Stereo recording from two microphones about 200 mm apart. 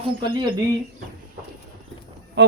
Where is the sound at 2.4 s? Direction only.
60° right (ahead or behind).